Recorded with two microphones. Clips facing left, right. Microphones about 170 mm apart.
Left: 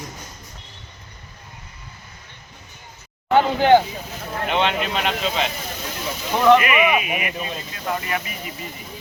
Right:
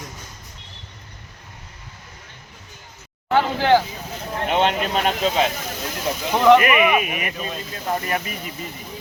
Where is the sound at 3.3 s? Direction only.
20° left (ahead or behind).